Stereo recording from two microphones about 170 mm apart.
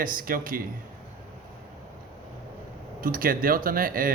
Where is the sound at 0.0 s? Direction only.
55° right (ahead or behind).